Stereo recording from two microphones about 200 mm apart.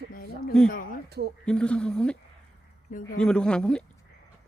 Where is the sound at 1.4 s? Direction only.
5° left (ahead or behind).